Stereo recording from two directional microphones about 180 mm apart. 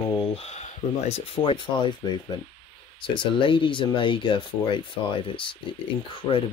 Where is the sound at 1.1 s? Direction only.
30° left (ahead or behind).